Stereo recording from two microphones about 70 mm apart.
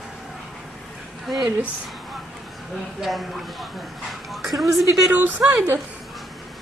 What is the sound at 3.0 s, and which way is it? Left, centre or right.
Speech, centre.